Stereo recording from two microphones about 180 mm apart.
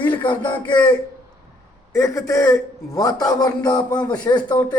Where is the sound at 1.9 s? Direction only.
20° left (ahead or behind).